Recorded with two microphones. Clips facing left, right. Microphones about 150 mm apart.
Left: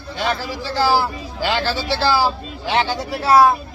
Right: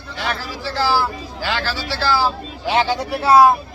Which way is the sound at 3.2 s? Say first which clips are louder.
Right 1 dB; 20° right (ahead or behind).